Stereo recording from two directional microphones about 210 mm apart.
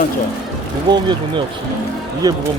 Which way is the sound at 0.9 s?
20° right (ahead or behind).